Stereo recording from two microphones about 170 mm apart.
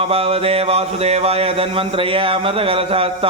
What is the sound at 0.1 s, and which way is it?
Speech, 35° right (ahead or behind).